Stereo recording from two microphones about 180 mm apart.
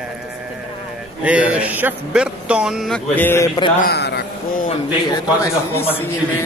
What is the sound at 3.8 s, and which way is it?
Speech, 65° left (ahead or behind).